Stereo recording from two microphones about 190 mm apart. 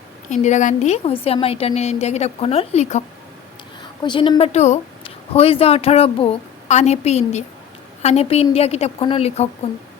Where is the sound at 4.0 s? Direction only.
25° left (ahead or behind).